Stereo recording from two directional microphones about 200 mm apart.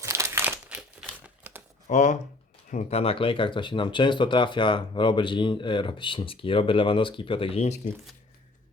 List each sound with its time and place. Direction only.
0.0 s crumpling: 15° right (ahead or behind)
1.9 s speech: 35° left (ahead or behind)